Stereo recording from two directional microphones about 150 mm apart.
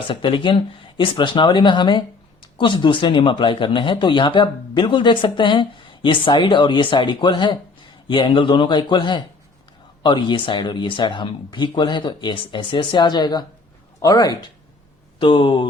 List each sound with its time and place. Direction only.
0.1 s speech: 35° left (ahead or behind)